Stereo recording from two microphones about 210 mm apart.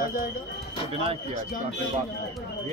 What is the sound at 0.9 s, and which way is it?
Speech, 30° right (ahead or behind).